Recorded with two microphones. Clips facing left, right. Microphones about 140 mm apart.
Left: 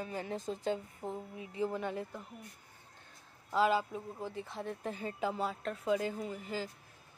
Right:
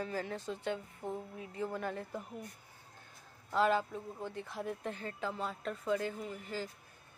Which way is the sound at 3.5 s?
5° left (ahead or behind).